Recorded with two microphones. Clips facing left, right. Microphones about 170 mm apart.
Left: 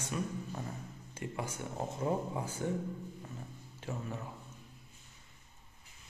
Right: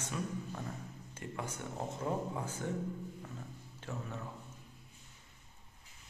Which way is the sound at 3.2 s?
15° left (ahead or behind).